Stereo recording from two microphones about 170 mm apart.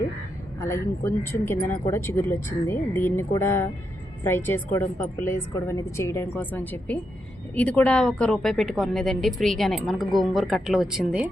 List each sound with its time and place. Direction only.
0.6 s a woman's voice: 15° left (ahead or behind); by 11.3 s 5° right (ahead or behind)